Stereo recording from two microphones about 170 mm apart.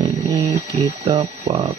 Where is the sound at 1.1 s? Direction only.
35° right (ahead or behind).